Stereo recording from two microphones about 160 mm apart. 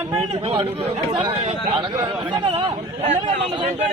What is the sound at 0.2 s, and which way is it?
A man's voice, 35° right (ahead or behind).